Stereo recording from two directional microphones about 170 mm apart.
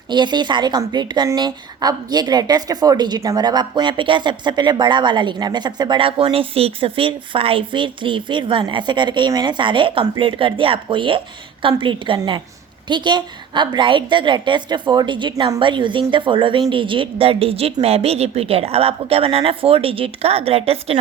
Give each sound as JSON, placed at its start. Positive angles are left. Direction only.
{"t": 0.1, "sound": "a woman's voice", "side_deg": -25}